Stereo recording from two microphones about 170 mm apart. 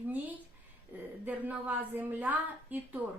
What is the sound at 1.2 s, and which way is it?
A woman's voice, 10° right (ahead or behind).